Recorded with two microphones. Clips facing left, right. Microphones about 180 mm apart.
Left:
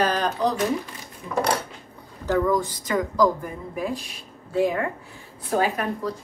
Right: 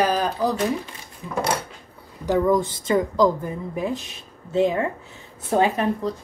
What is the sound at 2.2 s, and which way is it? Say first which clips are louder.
A woman's voice: right 2 dB; 20° right (ahead or behind).